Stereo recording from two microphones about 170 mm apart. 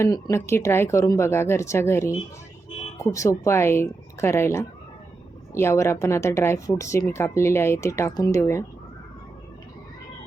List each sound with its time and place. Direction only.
0.0 s speech: 15° left (ahead or behind)